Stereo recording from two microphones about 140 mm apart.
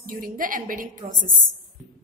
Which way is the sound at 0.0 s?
85° right.